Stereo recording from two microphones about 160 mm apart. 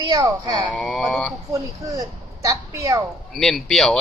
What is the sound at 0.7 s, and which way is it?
Speech, 5° left (ahead or behind).